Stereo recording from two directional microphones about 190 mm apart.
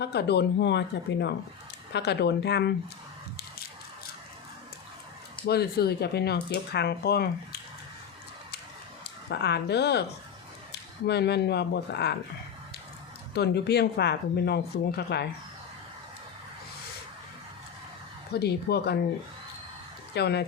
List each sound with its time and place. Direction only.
0.0 s speech: 60° left (ahead or behind)
5.5 s speech: 55° left (ahead or behind)
9.3 s speech: 60° left (ahead or behind)
13.3 s speech: 60° left (ahead or behind)
18.3 s speech: 60° left (ahead or behind)
20.1 s speech: 60° left (ahead or behind)